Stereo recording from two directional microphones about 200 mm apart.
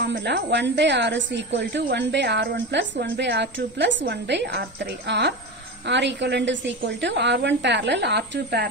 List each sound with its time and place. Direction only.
0.0 s a woman's voice: 60° right (ahead or behind)